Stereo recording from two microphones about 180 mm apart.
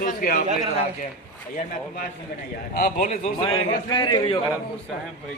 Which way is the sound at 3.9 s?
25° left (ahead or behind).